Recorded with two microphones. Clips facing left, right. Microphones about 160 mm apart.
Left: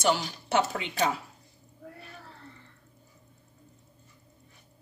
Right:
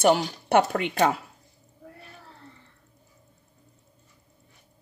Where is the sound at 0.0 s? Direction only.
55° right (ahead or behind).